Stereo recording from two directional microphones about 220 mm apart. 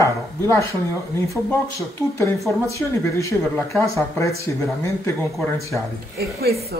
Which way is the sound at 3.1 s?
15° left (ahead or behind).